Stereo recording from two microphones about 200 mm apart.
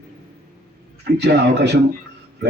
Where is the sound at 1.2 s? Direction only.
55° right (ahead or behind).